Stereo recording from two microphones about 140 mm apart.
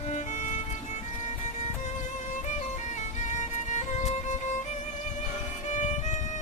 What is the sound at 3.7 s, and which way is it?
Music, 60° left (ahead or behind).